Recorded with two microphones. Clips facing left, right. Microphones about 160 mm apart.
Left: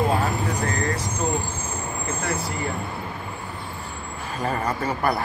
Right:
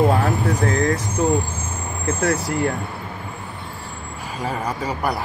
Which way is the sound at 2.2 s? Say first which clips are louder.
Right 9 dB; 75° right (ahead or behind).